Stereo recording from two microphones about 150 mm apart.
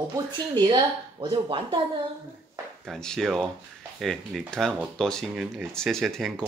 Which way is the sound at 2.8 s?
5° left (ahead or behind).